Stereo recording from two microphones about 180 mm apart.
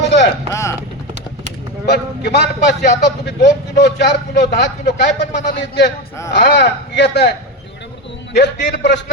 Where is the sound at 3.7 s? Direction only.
70° left (ahead or behind).